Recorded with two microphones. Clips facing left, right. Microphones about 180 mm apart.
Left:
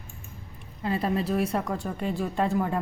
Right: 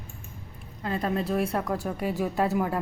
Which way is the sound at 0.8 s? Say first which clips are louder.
Left 1 dB; 5° left (ahead or behind).